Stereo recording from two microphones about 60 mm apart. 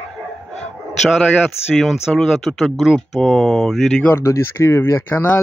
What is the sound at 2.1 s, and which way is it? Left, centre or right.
Speech, centre.